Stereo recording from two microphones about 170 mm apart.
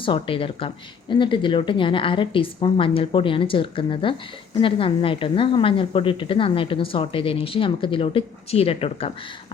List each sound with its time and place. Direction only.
0.0 s a woman's voice: 30° left (ahead or behind)